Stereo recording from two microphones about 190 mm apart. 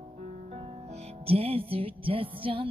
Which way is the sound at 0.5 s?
35° right (ahead or behind).